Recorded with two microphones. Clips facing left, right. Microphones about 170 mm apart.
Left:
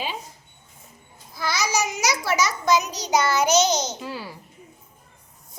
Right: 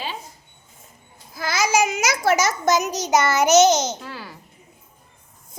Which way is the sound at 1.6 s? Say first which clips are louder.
Right 5 dB; 50° right (ahead or behind).